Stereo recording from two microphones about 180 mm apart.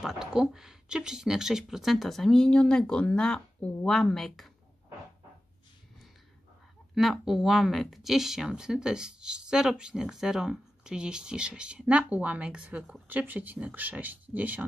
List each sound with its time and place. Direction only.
0.0 s speech: centre (ahead or behind)
7.0 s speech: centre (ahead or behind)